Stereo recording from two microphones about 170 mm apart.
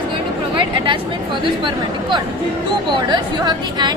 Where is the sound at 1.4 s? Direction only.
30° right (ahead or behind).